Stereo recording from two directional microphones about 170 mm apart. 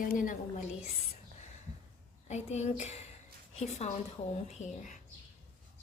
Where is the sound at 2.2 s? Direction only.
40° left (ahead or behind).